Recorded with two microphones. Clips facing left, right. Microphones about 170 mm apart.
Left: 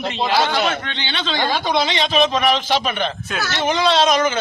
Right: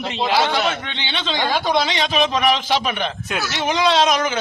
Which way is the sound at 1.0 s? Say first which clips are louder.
Right 1 dB; 20° right (ahead or behind).